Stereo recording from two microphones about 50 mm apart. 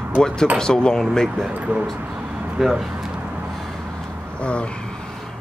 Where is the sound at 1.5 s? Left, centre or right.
Right.